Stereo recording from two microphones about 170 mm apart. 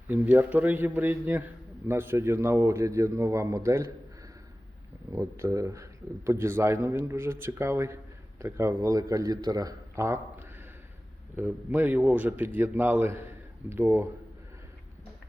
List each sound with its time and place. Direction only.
0.1 s speech: 10° right (ahead or behind)
5.1 s speech: 20° right (ahead or behind)
11.3 s speech: 10° right (ahead or behind)